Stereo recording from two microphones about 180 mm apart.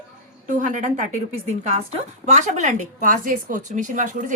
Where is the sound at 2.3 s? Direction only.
40° right (ahead or behind).